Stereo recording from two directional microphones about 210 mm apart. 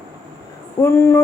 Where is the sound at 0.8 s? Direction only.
10° left (ahead or behind).